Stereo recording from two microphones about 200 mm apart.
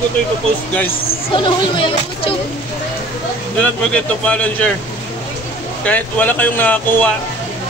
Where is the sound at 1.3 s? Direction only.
25° left (ahead or behind).